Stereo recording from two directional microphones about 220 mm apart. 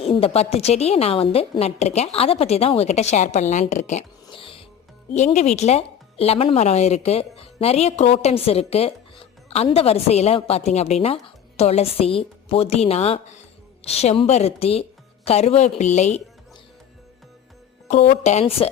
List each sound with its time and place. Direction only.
0.0 s speech: 25° left (ahead or behind)
17.8 s speech: 30° left (ahead or behind)